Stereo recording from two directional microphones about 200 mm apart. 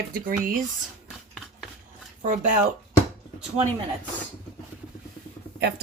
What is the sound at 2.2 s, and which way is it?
Speech, 40° right (ahead or behind).